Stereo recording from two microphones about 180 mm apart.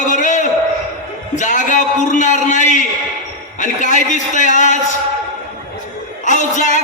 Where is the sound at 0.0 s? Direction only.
45° left (ahead or behind).